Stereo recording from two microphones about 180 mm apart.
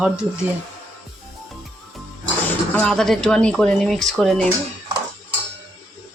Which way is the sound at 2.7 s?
5° left (ahead or behind).